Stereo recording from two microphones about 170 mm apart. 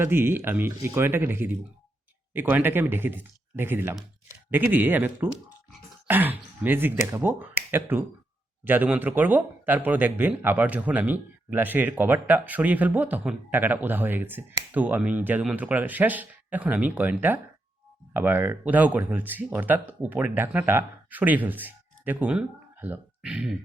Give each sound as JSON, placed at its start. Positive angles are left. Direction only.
{"t": 0.0, "sound": "speech", "side_deg": -15}